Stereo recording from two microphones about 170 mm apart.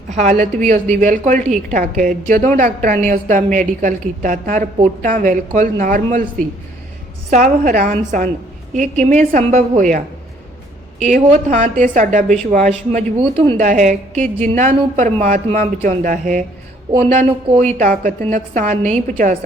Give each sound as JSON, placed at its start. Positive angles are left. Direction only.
{"t": 0.1, "sound": "a woman's voice", "side_deg": -45}
{"t": 7.3, "sound": "a woman's voice", "side_deg": -50}
{"t": 11.0, "sound": "a woman's voice", "side_deg": -45}
{"t": 17.5, "sound": "a woman's voice", "side_deg": -45}